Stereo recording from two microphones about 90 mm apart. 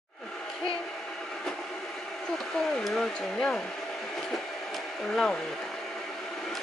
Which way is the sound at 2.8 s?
5° left (ahead or behind).